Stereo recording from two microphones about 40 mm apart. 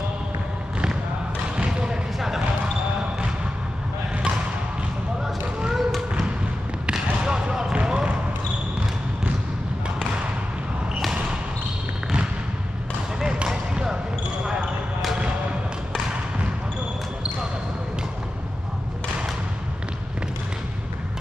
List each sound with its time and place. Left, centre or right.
1.6 s basketball bounce: right
2.1 s basketball bounce: centre
5.2 s a sound: centre
6.9 s basketball bounce: right
13.2 s basketball bounce: centre